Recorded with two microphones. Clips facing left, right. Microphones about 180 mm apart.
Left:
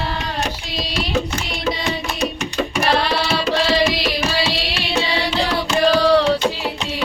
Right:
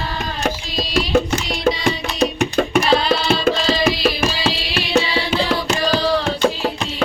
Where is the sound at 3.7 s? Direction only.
55° right (ahead or behind).